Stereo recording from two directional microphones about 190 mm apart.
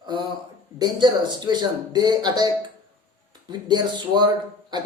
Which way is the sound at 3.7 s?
25° right (ahead or behind).